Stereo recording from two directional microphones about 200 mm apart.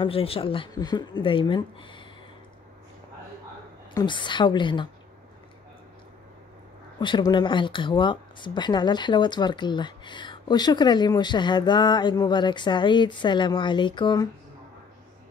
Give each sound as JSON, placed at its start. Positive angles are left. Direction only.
{"t": 0.0, "sound": "speech", "side_deg": 30}
{"t": 3.9, "sound": "speech", "side_deg": 25}
{"t": 7.0, "sound": "speech", "side_deg": 25}